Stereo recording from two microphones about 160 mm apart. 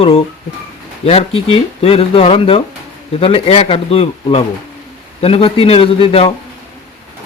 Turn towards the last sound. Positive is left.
turn(degrees=35)  # may be behind; listen again after turning